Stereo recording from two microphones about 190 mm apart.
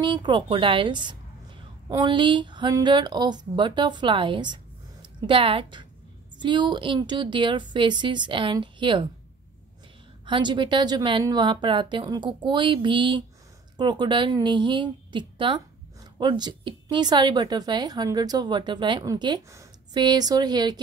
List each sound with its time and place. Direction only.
0.0 s a woman's voice: 25° right (ahead or behind)
10.2 s a woman's voice: 25° right (ahead or behind)